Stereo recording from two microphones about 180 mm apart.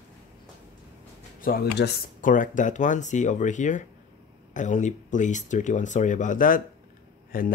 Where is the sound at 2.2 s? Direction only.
45° left (ahead or behind).